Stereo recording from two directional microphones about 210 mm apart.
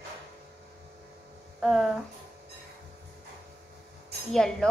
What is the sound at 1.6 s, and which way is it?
Speech, centre (ahead or behind).